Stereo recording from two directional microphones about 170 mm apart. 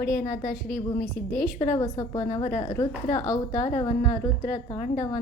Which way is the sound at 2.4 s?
45° left (ahead or behind).